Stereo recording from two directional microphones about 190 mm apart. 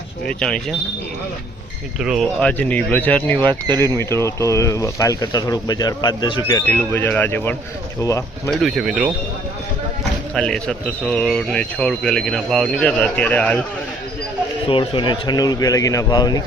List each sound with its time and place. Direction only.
0.3 s a man's voice: 5° left (ahead or behind)
2.0 s speech: centre (ahead or behind); by 6.6 s 20° left (ahead or behind)
6.7 s speech: 10° left (ahead or behind)
8.4 s a man's voice: centre (ahead or behind)
10.3 s a man's voice: 5° left (ahead or behind)
14.7 s speech: 25° left (ahead or behind)